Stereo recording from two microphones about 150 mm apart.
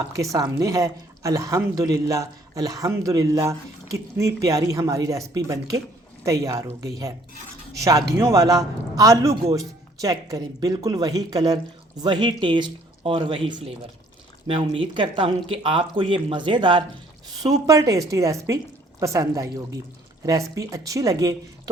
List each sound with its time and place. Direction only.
0.1 s a woman's voice: 20° right (ahead or behind)